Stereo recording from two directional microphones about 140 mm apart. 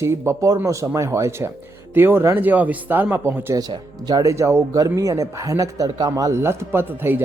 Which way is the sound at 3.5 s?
30° right (ahead or behind).